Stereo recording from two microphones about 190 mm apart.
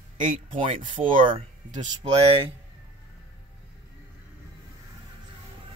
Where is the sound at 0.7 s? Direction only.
30° right (ahead or behind).